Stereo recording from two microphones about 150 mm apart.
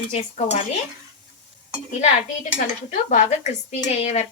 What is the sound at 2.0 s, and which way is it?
Speech, 55° left (ahead or behind).